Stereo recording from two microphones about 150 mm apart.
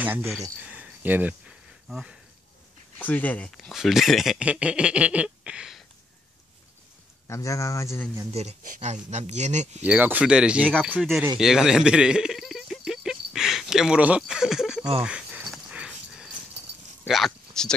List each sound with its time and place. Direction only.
0.0 s speech: 10° right (ahead or behind)
0.7 s cricket: 10° right (ahead or behind)
1.9 s speech: 5° right (ahead or behind)
3.0 s speech: 10° left (ahead or behind)
7.2 s speech: 20° left (ahead or behind)
8.3 s speech: 45° right (ahead or behind)
8.6 s speech: 60° right (ahead or behind)
9.8 s speech: 10° right (ahead or behind)
11.3 s a sound: 5° right (ahead or behind)
17.0 s speech: centre (ahead or behind)